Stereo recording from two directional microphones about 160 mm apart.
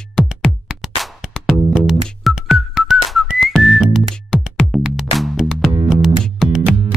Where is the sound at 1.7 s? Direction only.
Centre (ahead or behind).